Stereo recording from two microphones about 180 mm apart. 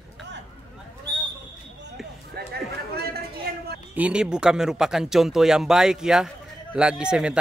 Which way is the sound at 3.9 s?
5° right (ahead or behind).